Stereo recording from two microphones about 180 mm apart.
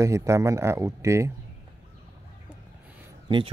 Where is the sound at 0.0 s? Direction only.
15° right (ahead or behind).